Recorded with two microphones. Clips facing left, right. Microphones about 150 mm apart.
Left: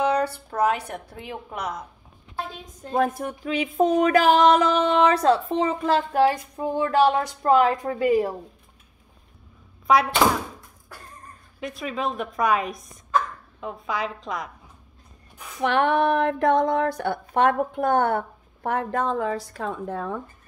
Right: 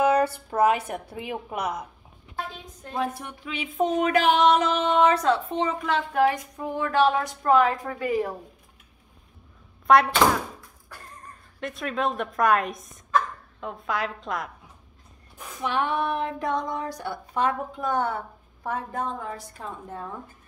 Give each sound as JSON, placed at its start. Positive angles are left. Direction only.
{"t": 0.0, "sound": "a woman's voice", "side_deg": -5}
{"t": 2.9, "sound": "a sound", "side_deg": 45}
{"t": 7.4, "sound": "a woman's voice", "side_deg": 25}
{"t": 9.9, "sound": "a woman's voice", "side_deg": 0}
{"t": 11.6, "sound": "a woman's voice", "side_deg": 0}
{"t": 15.6, "sound": "speech", "side_deg": 65}